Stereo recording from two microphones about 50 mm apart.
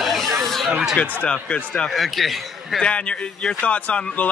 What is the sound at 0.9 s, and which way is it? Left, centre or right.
Speech, left.